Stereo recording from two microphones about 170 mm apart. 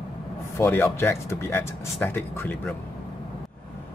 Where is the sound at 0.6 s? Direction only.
15° left (ahead or behind).